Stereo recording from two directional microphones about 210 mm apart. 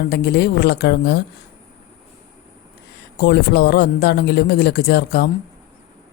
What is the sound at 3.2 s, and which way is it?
Speech, 50° left (ahead or behind).